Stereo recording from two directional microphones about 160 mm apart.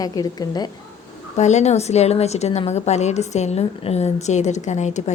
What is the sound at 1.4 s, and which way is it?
A woman's voice, 45° left (ahead or behind).